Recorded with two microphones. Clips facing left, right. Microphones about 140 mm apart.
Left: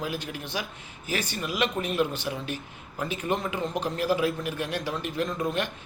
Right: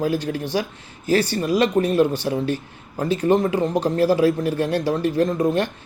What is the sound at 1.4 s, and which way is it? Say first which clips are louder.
Speech: right 10 dB; 40° right (ahead or behind).